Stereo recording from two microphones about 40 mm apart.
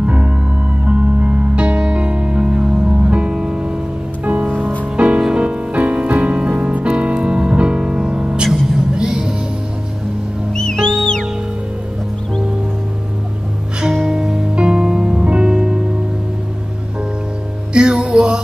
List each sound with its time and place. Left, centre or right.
0.0 s music: right
4.9 s music: right
10.5 s music: centre
14.0 s music: centre
17.7 s music: right